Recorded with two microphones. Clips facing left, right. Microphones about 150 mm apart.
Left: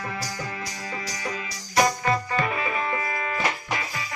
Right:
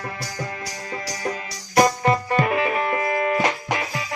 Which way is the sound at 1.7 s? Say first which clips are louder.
Right 4 dB; 55° right (ahead or behind).